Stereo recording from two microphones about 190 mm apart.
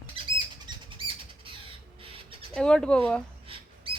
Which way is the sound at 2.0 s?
30° right (ahead or behind).